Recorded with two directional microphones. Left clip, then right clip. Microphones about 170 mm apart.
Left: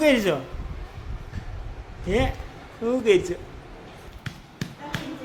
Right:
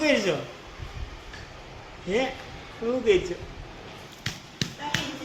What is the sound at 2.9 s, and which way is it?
Speech, 20° left (ahead or behind).